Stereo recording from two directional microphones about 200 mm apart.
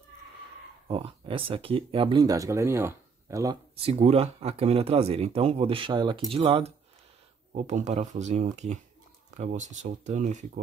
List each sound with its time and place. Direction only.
0.8 s speech: 25° right (ahead or behind)
3.8 s speech: 30° right (ahead or behind)